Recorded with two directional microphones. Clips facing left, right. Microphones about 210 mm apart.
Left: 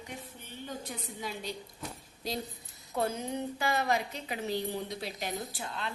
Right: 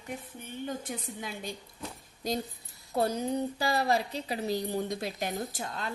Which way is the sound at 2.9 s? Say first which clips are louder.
Right 4 dB; 35° right (ahead or behind).